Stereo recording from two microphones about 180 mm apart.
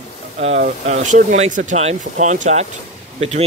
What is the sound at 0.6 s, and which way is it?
Speech, 45° right (ahead or behind).